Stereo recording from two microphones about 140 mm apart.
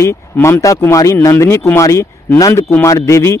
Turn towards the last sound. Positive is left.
turn(degrees=20)  # may be behind; listen again after turning